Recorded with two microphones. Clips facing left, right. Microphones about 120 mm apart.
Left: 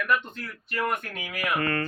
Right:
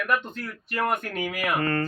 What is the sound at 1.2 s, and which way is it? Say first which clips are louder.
Speech: right 1 dB; 30° right (ahead or behind).